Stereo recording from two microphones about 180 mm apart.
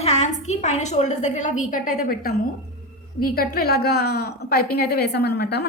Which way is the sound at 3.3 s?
55° left (ahead or behind).